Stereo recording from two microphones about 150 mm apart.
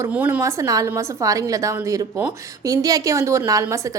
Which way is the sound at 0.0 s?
10° right (ahead or behind).